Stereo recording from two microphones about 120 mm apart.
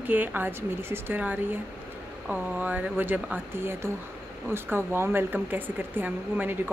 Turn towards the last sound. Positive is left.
turn(degrees=-15)  # may be behind; listen again after turning